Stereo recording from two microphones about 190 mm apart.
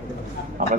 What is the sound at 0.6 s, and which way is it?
Speech, 45° right (ahead or behind).